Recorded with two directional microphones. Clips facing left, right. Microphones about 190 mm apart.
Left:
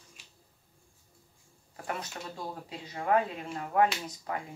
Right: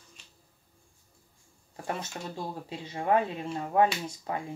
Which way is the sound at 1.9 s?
25° right (ahead or behind).